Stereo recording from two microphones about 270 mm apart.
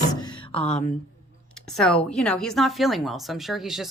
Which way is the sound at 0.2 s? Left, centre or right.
Centre.